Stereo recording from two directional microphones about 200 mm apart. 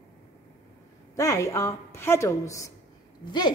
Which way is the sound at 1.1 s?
15° left (ahead or behind).